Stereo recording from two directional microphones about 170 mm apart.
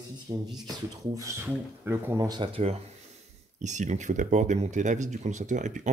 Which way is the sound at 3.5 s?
45° right (ahead or behind).